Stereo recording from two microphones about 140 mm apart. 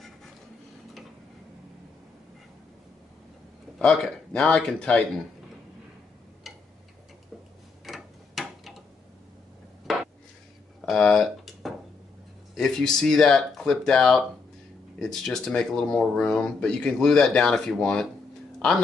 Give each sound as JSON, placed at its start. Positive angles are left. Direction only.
{"t": 3.7, "sound": "speech", "side_deg": 5}
{"t": 6.5, "sound": "tick-tock", "side_deg": 0}
{"t": 7.8, "sound": "tick-tock", "side_deg": 0}
{"t": 10.9, "sound": "a sound", "side_deg": 5}
{"t": 12.5, "sound": "speech", "side_deg": 5}